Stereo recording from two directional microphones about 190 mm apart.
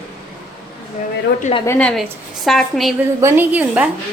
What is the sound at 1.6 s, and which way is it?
A woman's voice, 5° left (ahead or behind).